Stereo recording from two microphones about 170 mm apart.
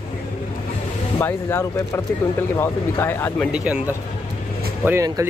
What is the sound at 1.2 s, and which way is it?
Speech, 15° left (ahead or behind).